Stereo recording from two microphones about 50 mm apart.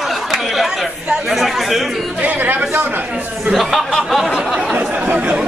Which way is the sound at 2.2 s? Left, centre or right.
Right.